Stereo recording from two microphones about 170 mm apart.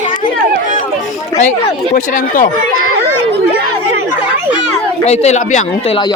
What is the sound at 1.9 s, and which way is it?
Speech, 50° left (ahead or behind).